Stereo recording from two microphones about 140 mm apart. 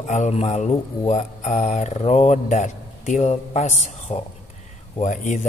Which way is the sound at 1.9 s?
50° left (ahead or behind).